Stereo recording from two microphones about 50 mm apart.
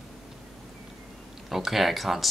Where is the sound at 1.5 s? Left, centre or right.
Centre.